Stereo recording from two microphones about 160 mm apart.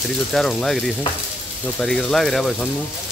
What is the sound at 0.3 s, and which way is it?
Speech, centre (ahead or behind).